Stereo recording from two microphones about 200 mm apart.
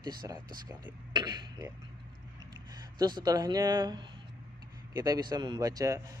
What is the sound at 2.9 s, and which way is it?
A man's voice, 20° right (ahead or behind).